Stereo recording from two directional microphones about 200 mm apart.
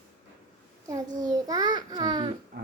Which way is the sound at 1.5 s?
20° right (ahead or behind).